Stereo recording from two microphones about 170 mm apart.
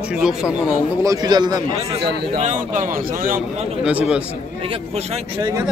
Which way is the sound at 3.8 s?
5° right (ahead or behind).